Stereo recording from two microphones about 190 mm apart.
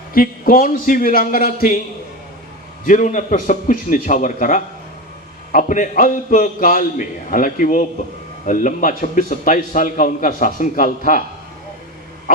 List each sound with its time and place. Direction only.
0.1 s a man's voice: 50° left (ahead or behind)
2.8 s a man's voice: 45° left (ahead or behind)